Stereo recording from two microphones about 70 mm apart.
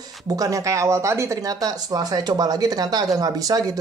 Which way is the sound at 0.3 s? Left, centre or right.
Right.